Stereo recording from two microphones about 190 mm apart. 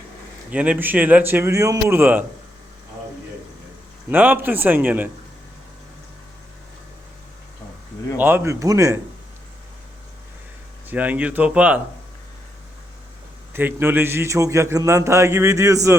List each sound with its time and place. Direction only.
0.5 s a man's voice: 5° right (ahead or behind)
4.1 s a man's voice: 10° right (ahead or behind)
8.2 s a man's voice: 10° right (ahead or behind)
10.8 s a man's voice: 5° right (ahead or behind)
13.5 s a man's voice: 10° right (ahead or behind)